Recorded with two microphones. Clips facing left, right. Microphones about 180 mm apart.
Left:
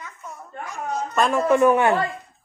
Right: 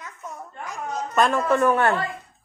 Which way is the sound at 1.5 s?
15° left (ahead or behind).